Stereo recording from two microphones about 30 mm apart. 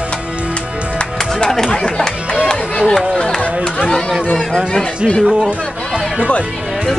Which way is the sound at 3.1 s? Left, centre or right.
Left.